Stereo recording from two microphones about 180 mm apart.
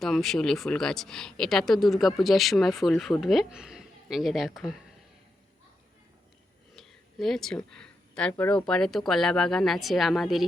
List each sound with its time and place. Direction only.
0.0 s speech: centre (ahead or behind)
6.7 s speech: centre (ahead or behind)